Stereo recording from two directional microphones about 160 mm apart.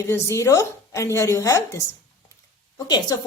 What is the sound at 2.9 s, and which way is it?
Speech, 25° left (ahead or behind).